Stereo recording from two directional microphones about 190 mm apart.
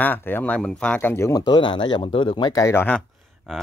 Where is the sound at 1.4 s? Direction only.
25° left (ahead or behind).